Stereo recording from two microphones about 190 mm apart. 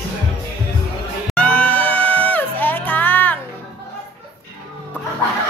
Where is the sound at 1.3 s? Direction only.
5° left (ahead or behind).